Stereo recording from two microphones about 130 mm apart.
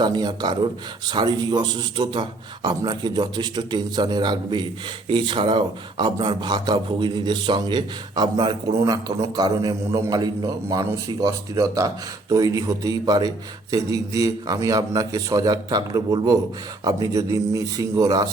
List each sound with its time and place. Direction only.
0.0 s a man's voice: 30° right (ahead or behind)